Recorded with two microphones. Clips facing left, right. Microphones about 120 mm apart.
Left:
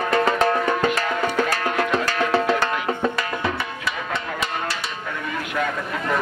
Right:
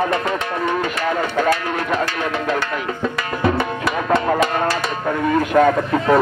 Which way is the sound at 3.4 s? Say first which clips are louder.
Right 7 dB; 45° right (ahead or behind).